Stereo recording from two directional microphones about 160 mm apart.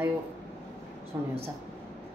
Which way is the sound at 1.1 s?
20° right (ahead or behind).